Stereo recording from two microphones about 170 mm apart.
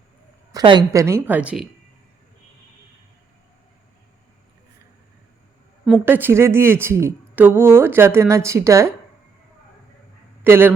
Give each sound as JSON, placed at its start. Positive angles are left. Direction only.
{"t": 0.5, "sound": "speech", "side_deg": -25}
{"t": 6.1, "sound": "speech", "side_deg": -10}
{"t": 10.4, "sound": "speech", "side_deg": -10}